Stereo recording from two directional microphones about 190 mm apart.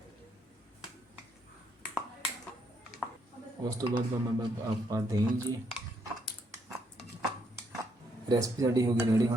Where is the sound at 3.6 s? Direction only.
20° right (ahead or behind).